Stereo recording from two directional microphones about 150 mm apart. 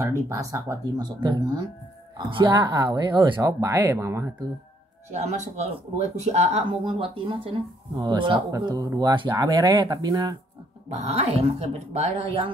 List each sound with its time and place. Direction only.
0.3 s speech: 20° right (ahead or behind)
5.1 s speech: 50° right (ahead or behind)
6.8 s speech: 35° right (ahead or behind)
10.9 s speech: 45° right (ahead or behind)